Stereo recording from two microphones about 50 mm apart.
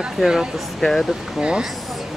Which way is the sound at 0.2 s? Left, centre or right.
Centre.